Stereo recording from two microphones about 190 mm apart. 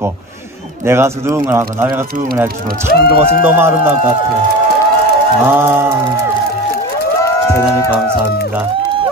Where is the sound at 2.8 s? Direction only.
60° left (ahead or behind).